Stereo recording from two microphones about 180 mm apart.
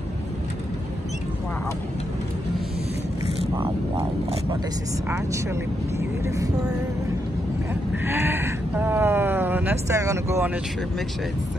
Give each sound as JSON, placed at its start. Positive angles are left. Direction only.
{"t": 3.6, "sound": "vehicle", "side_deg": -30}
{"t": 5.1, "sound": "speech", "side_deg": -15}
{"t": 8.0, "sound": "speech", "side_deg": -10}